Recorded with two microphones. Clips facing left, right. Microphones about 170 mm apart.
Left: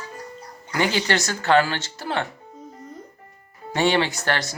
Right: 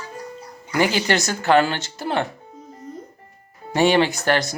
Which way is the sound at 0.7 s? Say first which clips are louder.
Right 3 dB; 10° right (ahead or behind).